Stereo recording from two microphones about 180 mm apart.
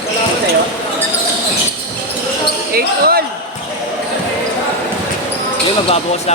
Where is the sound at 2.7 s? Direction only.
55° right (ahead or behind).